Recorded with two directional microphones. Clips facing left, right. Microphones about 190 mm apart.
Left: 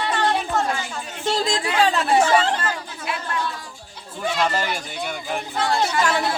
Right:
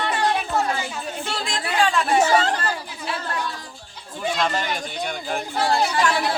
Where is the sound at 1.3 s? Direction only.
40° left (ahead or behind).